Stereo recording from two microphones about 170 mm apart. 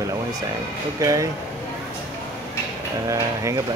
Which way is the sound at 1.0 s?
20° right (ahead or behind).